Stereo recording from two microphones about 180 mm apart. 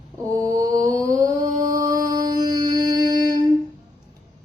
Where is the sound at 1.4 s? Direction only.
20° right (ahead or behind).